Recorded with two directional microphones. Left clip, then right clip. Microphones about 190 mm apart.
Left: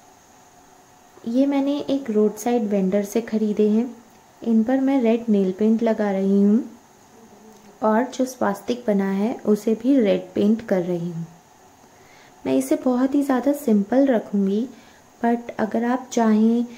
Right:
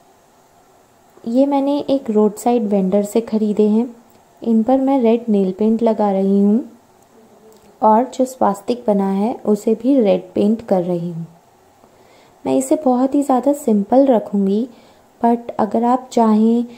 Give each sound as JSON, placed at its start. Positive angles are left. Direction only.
{"t": 1.2, "sound": "a woman's voice", "side_deg": -20}
{"t": 7.8, "sound": "speech", "side_deg": -15}
{"t": 12.4, "sound": "a woman's voice", "side_deg": -20}